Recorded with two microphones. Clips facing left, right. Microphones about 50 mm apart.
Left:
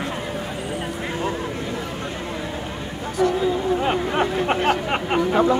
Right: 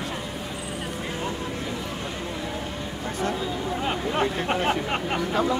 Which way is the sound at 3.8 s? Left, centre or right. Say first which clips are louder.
Left 4 dB; left.